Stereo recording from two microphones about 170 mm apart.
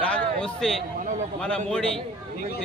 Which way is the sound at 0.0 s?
5° left (ahead or behind).